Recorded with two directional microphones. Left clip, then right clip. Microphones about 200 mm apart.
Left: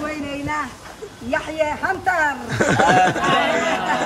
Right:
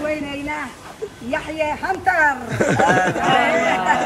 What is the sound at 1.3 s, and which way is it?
A man's voice, 5° left (ahead or behind).